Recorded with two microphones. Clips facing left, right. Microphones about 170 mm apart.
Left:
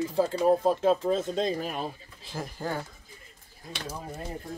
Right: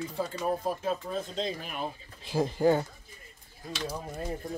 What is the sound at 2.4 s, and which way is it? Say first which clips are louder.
Speech: right 9 dB; 20° right (ahead or behind).